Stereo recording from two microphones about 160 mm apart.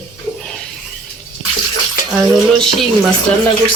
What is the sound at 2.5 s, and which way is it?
Speech, 5° left (ahead or behind).